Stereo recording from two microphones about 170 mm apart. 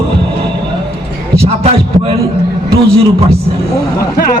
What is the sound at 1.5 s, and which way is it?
Heart sounds, 35° right (ahead or behind).